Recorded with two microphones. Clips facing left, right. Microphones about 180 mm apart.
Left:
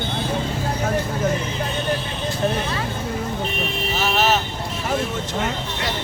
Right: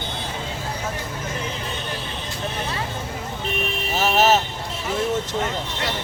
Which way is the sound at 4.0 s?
45° right (ahead or behind).